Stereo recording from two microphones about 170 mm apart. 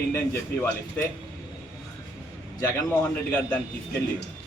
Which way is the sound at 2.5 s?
15° left (ahead or behind).